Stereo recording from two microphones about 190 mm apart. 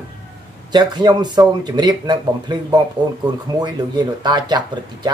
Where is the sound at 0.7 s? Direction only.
20° right (ahead or behind).